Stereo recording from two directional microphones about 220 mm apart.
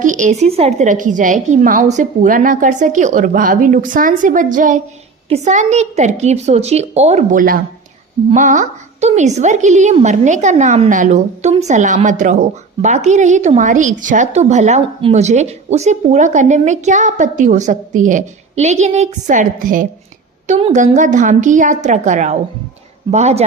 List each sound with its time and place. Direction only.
0.0 s speech: 35° right (ahead or behind)